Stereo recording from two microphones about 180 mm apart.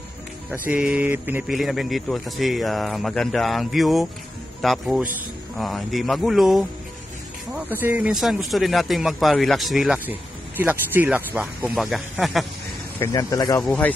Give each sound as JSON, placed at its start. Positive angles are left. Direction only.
{"t": 0.5, "sound": "speech", "side_deg": -5}
{"t": 13.0, "sound": "speech", "side_deg": 20}
{"t": 13.6, "sound": "speech", "side_deg": 5}